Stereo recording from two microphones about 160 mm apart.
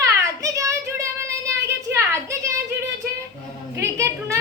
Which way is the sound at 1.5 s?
20° right (ahead or behind).